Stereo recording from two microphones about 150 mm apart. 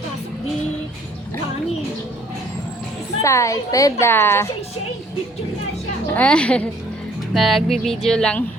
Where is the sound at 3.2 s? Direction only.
20° left (ahead or behind).